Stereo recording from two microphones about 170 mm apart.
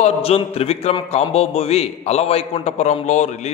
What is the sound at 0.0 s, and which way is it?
A man's voice, 35° left (ahead or behind).